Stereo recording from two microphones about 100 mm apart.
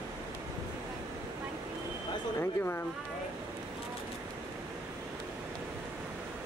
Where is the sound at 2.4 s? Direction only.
20° left (ahead or behind).